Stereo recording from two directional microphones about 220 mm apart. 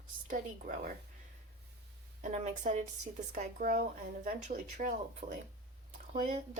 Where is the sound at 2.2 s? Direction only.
35° right (ahead or behind).